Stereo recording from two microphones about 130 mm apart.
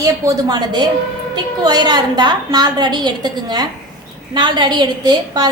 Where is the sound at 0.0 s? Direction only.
30° right (ahead or behind).